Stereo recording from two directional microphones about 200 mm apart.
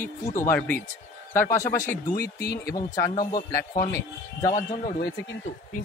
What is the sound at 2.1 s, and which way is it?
Speech, 50° left (ahead or behind).